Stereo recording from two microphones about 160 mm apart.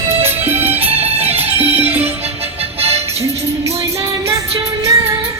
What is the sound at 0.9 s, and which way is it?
Music, 40° right (ahead or behind).